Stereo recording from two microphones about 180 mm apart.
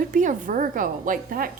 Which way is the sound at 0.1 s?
45° right (ahead or behind).